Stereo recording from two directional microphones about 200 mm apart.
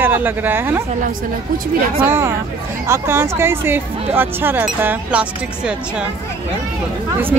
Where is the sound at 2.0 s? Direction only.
10° right (ahead or behind).